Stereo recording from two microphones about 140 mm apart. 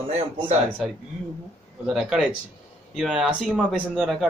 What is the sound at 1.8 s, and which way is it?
Speech, 5° right (ahead or behind).